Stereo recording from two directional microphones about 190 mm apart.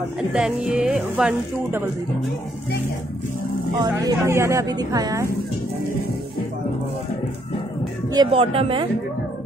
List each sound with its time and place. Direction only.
0.3 s speech: 5° right (ahead or behind)
3.8 s speech: 15° right (ahead or behind)
8.1 s speech: 25° right (ahead or behind)